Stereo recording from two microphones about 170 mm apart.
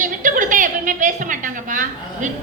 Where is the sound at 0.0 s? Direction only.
50° right (ahead or behind).